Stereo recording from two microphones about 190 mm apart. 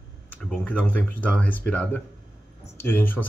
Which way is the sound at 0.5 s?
10° left (ahead or behind).